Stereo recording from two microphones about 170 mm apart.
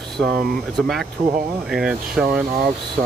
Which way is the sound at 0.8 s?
Centre (ahead or behind).